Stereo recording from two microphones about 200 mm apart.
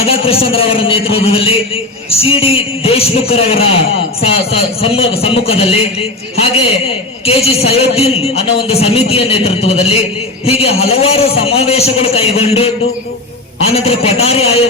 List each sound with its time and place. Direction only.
0.0 s a man's voice: 30° left (ahead or behind)
7.3 s a man's voice: 30° left (ahead or behind)